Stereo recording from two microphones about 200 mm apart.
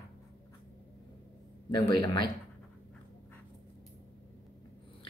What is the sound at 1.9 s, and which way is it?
Speech, 20° left (ahead or behind).